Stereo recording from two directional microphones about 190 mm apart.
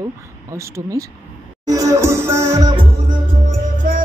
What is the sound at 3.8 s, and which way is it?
Music, 45° right (ahead or behind).